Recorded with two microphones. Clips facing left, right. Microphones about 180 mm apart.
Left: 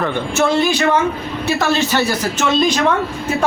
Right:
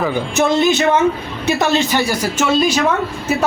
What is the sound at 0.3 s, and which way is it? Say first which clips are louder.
A man's voice: right 1 dB; 20° right (ahead or behind).